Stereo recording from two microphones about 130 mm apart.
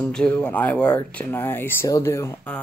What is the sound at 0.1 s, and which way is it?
Speech, 5° left (ahead or behind).